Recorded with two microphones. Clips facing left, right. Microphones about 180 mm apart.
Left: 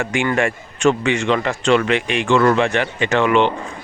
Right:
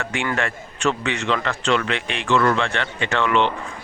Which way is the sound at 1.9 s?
10° left (ahead or behind).